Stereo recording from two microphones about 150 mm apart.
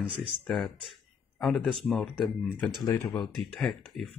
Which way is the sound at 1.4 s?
Centre (ahead or behind).